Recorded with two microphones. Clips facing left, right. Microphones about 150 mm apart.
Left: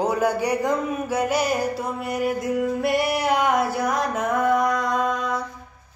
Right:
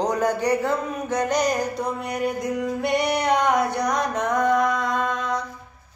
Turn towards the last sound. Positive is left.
turn(degrees=0)  # may be behind; listen again after turning